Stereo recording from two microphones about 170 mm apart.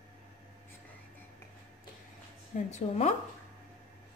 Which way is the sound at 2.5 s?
40° left (ahead or behind).